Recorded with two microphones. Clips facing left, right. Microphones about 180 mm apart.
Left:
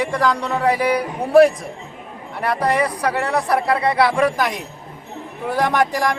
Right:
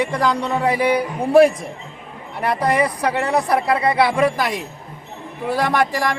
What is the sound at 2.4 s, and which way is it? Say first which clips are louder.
Speech: right 1 dB; 15° right (ahead or behind).